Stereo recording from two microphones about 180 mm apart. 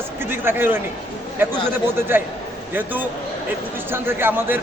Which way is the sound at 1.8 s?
10° right (ahead or behind).